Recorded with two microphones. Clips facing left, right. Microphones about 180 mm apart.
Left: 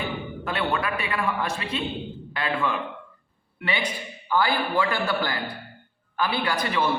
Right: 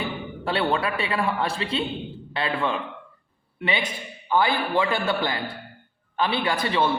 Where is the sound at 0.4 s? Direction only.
30° right (ahead or behind).